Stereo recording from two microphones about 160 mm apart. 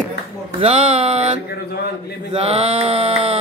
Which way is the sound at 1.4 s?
80° left.